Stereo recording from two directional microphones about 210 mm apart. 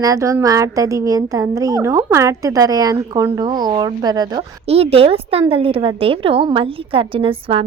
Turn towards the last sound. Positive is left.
turn(degrees=-25)  # may be behind; listen again after turning